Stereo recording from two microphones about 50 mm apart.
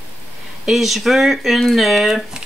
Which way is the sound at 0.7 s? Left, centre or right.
Centre.